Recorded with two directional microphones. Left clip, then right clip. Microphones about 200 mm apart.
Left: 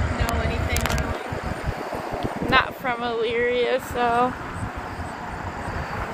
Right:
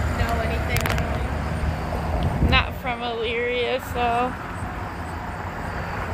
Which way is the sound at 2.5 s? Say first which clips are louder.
Left 3 dB; 30° left (ahead or behind).